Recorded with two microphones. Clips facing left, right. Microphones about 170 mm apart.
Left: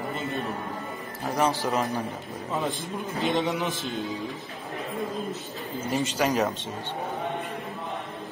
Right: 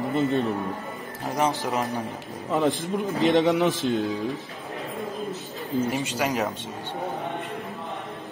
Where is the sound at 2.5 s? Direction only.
75° right (ahead or behind).